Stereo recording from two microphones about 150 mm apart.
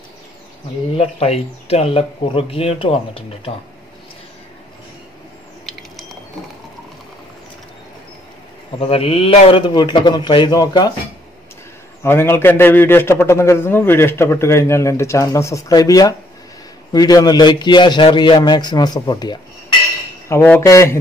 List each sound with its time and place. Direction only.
0.9 s a man's voice: 40° left (ahead or behind)
5.7 s squish: centre (ahead or behind)
8.7 s a man's voice: 40° left (ahead or behind)
12.0 s a man's voice: 15° left (ahead or behind)
20.2 s a man's voice: 15° left (ahead or behind)